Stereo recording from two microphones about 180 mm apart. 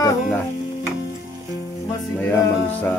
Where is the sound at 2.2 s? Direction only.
10° left (ahead or behind).